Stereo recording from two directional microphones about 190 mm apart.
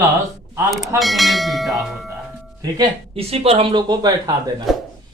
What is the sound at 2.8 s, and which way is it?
Speech, 30° right (ahead or behind).